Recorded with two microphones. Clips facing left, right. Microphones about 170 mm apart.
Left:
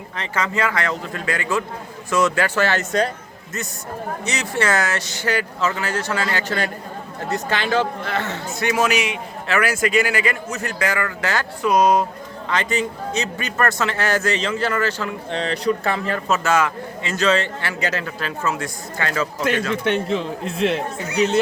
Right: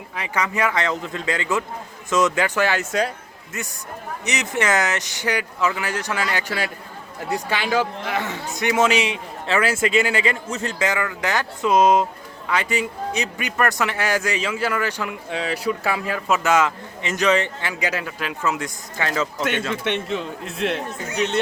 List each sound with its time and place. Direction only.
0.2 s a man's voice: 15° right (ahead or behind)
4.3 s a man's voice: 20° right (ahead or behind)
12.5 s a man's voice: 10° right (ahead or behind)
19.7 s speech: centre (ahead or behind)